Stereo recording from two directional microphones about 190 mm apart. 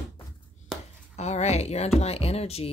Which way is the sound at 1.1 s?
35° left (ahead or behind).